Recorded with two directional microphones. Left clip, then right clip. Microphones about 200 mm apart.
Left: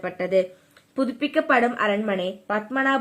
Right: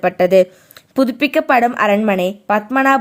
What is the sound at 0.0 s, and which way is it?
Speech, 50° right (ahead or behind).